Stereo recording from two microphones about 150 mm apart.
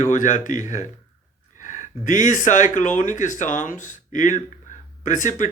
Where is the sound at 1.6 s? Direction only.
60° left (ahead or behind).